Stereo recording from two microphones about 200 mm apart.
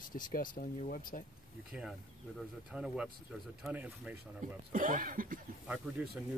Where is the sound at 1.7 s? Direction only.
5° right (ahead or behind).